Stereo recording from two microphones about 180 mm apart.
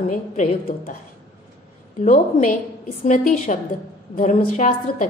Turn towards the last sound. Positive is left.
turn(degrees=45)  # may be behind; listen again after turning